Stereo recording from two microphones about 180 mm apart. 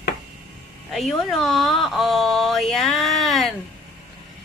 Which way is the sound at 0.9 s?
Centre (ahead or behind).